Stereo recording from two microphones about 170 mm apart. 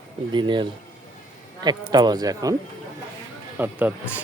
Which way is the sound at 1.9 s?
25° right (ahead or behind).